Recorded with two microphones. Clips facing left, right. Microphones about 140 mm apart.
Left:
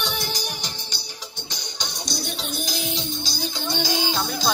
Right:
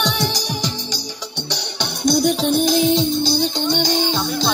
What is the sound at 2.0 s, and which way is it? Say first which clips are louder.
Music: right 17 dB; 50° right (ahead or behind).